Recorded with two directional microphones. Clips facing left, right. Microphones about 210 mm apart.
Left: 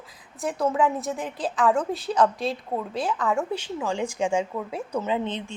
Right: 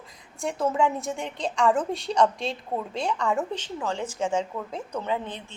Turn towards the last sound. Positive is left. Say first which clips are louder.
# left 3 dB
turn(degrees=20)  # may be behind; listen again after turning